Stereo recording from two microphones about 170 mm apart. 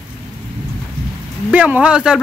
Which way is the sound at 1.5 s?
10° right (ahead or behind).